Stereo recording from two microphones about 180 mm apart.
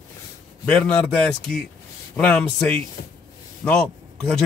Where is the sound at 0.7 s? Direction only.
5° left (ahead or behind).